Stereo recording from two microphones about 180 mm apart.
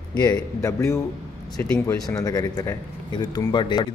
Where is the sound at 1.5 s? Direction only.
5° left (ahead or behind).